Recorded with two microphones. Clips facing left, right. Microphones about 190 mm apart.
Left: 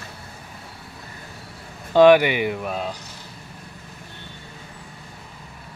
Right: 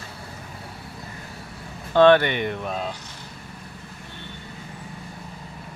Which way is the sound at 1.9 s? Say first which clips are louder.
Left 2 dB; 10° left (ahead or behind).